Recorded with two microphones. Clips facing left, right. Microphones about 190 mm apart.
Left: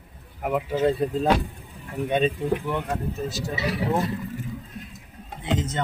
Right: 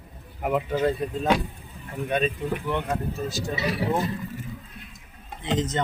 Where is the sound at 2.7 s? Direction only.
Centre (ahead or behind).